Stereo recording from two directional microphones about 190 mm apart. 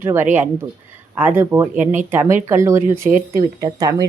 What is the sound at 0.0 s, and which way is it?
Speech, 10° right (ahead or behind).